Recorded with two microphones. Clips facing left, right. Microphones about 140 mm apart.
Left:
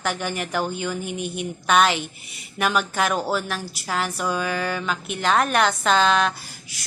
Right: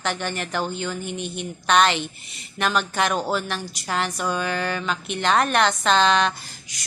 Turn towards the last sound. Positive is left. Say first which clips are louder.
# even
turn(degrees=5)  # may be behind; listen again after turning